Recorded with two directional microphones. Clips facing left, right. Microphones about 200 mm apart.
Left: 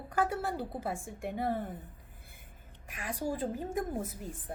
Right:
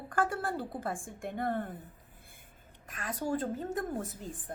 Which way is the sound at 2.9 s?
10° left (ahead or behind).